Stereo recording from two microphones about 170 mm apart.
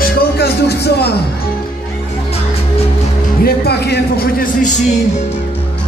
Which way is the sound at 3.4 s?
70° left (ahead or behind).